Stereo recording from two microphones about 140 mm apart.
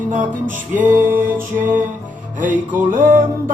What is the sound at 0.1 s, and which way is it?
Music, 65° right (ahead or behind).